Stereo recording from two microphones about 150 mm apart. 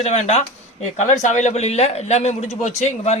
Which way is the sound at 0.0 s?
45° left (ahead or behind).